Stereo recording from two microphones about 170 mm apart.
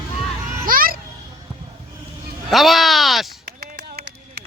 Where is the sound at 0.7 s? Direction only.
55° right (ahead or behind).